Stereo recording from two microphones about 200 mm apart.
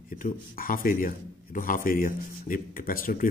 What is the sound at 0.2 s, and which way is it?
Speech, 45° left (ahead or behind).